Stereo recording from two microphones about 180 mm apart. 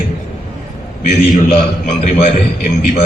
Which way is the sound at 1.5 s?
35° left (ahead or behind).